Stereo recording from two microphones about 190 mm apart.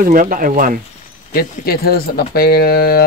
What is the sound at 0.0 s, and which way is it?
Speech, 45° right (ahead or behind).